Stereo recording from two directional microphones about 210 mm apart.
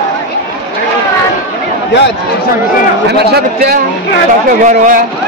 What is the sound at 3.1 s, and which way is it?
Speech, 50° right (ahead or behind).